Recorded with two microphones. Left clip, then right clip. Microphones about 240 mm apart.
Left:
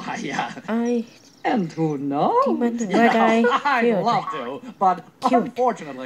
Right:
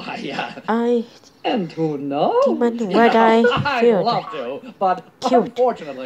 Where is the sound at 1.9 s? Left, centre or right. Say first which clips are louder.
Right 2 dB; left.